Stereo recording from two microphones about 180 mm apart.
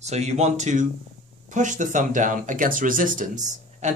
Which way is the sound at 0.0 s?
40° right (ahead or behind).